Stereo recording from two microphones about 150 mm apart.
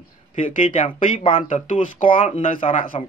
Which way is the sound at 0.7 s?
55° left (ahead or behind).